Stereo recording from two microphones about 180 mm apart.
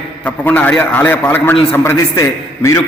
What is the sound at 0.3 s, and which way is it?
A man's voice, 10° left (ahead or behind).